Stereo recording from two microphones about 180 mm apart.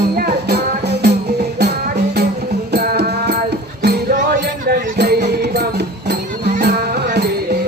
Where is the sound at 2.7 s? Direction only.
65° right (ahead or behind).